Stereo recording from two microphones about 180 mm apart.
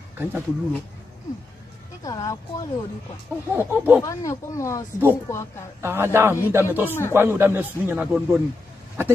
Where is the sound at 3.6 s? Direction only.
10° right (ahead or behind).